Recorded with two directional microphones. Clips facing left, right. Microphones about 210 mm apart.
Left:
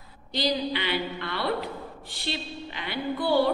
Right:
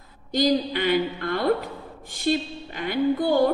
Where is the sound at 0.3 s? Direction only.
45° right (ahead or behind).